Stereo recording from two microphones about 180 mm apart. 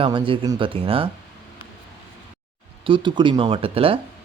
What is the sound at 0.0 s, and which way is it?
Speech, 30° right (ahead or behind).